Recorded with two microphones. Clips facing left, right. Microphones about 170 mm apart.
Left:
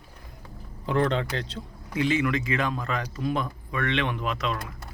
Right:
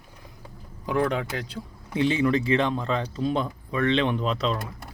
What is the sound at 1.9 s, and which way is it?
Speech, 30° right (ahead or behind).